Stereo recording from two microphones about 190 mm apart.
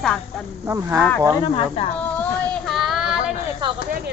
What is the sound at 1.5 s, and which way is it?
Speech, 35° left (ahead or behind).